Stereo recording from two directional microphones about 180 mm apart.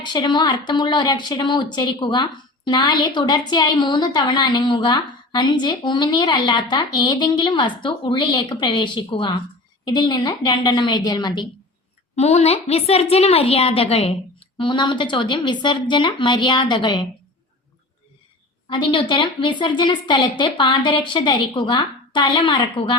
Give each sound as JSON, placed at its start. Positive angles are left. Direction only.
{"t": 0.0, "sound": "speech", "side_deg": 25}
{"t": 12.1, "sound": "a woman's voice", "side_deg": 35}
{"t": 18.7, "sound": "speech", "side_deg": 30}